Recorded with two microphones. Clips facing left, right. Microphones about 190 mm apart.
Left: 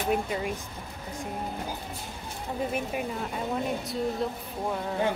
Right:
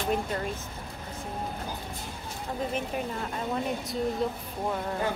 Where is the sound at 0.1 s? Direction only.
10° left (ahead or behind).